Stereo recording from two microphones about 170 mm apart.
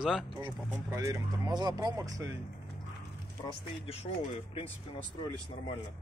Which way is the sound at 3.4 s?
35° left (ahead or behind).